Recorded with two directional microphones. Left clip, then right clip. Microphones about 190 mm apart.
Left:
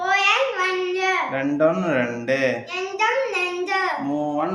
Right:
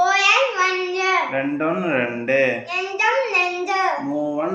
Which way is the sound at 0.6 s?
20° left (ahead or behind).